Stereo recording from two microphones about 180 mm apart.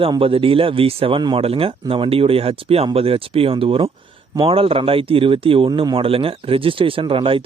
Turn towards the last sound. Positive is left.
turn(degrees=-30)  # may be behind; listen again after turning